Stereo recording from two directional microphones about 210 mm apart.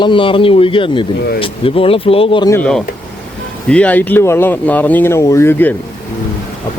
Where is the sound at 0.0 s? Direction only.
25° left (ahead or behind).